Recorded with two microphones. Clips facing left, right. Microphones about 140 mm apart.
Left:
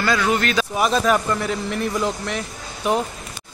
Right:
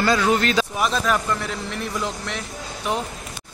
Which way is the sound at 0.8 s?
Centre (ahead or behind).